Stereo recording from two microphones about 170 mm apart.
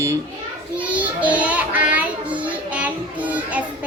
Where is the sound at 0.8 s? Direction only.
10° right (ahead or behind).